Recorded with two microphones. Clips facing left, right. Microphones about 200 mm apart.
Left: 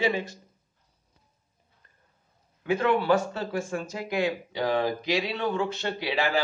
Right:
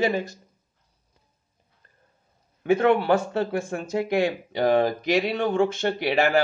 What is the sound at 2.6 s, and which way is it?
Speech, 55° right (ahead or behind).